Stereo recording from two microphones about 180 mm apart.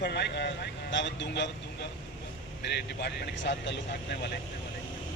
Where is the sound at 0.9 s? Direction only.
80° left.